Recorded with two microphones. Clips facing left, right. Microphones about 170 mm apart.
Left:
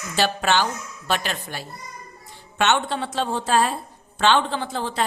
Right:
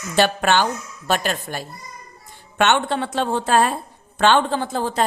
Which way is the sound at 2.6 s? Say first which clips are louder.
Right 3 dB; 55° right (ahead or behind).